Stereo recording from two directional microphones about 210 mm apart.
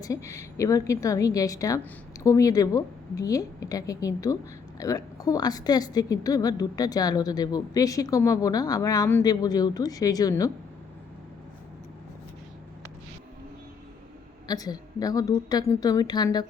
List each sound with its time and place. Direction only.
0.0 s a woman's voice: 15° left (ahead or behind)
14.4 s a woman's voice: 20° left (ahead or behind)